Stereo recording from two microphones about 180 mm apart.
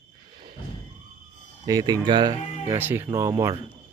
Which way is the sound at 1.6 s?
20° right (ahead or behind).